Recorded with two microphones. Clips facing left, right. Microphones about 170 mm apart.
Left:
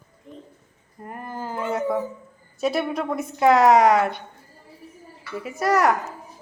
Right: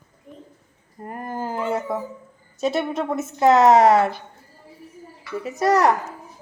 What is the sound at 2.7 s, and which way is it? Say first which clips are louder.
A woman's voice: right 1 dB; 25° right (ahead or behind).